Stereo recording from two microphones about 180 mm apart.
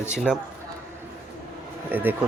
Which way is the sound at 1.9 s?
10° right (ahead or behind).